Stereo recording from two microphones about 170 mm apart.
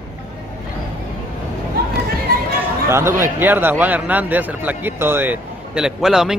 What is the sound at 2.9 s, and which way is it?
A man's voice, 15° right (ahead or behind).